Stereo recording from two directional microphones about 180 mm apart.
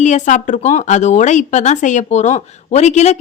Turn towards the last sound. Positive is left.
turn(degrees=40)  # may be behind; listen again after turning